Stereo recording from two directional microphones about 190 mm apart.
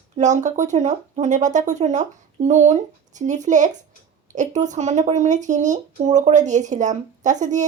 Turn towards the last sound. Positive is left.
turn(degrees=-40)  # may be behind; listen again after turning